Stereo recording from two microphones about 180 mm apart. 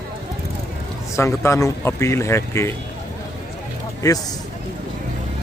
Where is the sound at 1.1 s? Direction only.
15° left (ahead or behind).